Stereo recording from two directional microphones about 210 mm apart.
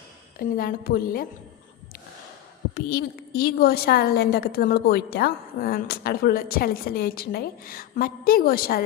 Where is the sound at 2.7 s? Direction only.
45° left (ahead or behind).